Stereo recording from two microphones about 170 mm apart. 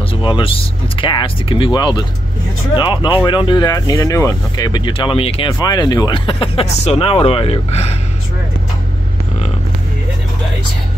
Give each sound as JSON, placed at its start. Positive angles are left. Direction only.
{"t": 0.2, "sound": "speech", "side_deg": 30}